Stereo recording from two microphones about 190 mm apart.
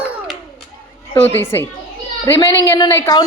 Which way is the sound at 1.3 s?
10° left (ahead or behind).